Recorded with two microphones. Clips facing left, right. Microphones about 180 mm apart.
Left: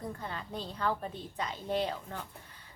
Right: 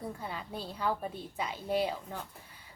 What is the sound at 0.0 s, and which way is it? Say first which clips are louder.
Speech: even; 10° right (ahead or behind).